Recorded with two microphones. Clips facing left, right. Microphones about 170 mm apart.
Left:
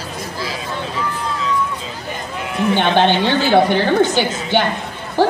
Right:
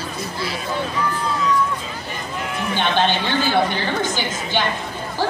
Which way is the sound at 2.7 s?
60° left (ahead or behind).